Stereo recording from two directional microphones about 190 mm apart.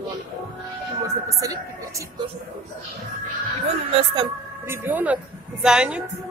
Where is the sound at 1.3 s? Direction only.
15° right (ahead or behind).